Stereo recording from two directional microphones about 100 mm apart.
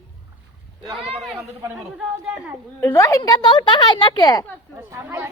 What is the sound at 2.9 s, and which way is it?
Speech, 35° left (ahead or behind).